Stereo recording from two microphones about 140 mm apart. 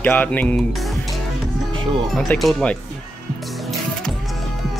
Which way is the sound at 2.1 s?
5° left (ahead or behind).